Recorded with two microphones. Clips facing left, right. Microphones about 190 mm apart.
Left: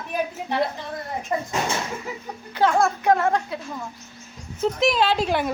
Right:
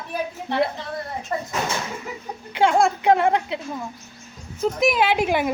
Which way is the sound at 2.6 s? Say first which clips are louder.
Right 2 dB; 15° right (ahead or behind).